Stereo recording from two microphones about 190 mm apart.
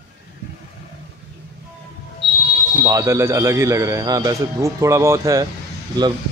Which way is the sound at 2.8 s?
15° right (ahead or behind).